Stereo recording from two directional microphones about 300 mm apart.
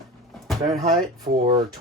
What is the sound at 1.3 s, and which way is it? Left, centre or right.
Speech, right.